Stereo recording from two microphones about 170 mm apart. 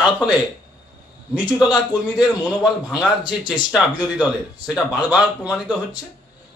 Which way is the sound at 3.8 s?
5° right (ahead or behind).